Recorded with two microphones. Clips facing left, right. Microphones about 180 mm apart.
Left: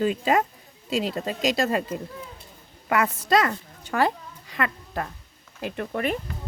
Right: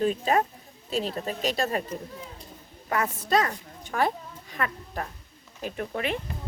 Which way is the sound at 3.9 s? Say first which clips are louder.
Left 3 dB; 90° left.